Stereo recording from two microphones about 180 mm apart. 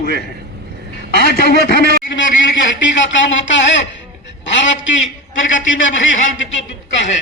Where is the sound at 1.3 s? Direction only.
60° left (ahead or behind); by 3.6 s 90° left.